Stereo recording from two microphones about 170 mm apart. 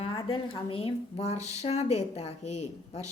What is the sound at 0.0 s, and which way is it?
A woman's voice, 30° left (ahead or behind).